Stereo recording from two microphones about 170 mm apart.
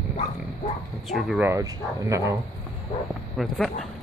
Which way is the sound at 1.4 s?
15° right (ahead or behind).